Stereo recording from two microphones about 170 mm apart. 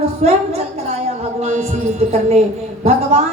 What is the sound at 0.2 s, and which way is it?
A woman's voice, 40° right (ahead or behind).